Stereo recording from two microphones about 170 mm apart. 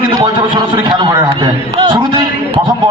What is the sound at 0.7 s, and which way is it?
A man's voice, 20° right (ahead or behind).